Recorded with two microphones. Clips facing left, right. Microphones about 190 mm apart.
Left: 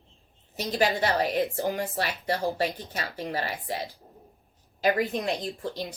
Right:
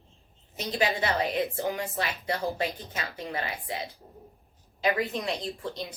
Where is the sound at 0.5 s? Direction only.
40° left (ahead or behind).